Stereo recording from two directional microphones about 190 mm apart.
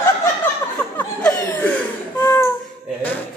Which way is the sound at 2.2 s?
15° left (ahead or behind).